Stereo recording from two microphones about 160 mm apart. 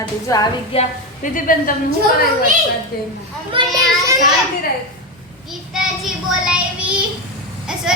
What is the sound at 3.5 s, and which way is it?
Speech, 35° right (ahead or behind).